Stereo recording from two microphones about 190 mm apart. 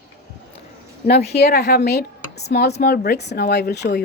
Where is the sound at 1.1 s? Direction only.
60° left (ahead or behind).